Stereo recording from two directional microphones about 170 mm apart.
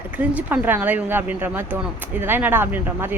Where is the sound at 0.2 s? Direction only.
10° right (ahead or behind).